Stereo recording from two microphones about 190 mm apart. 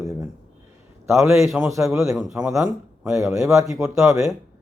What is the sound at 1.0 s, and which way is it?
Speech, 15° right (ahead or behind).